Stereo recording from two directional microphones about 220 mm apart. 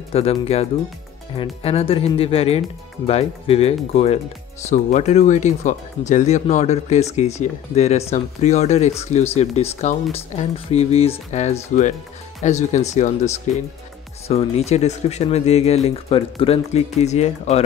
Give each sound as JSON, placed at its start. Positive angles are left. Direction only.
{"t": 0.1, "sound": "speech", "side_deg": 25}